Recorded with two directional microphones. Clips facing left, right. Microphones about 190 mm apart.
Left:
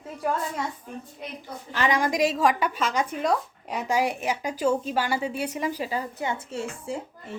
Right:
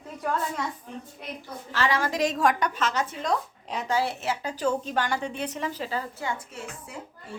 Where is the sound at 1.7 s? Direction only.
15° left (ahead or behind).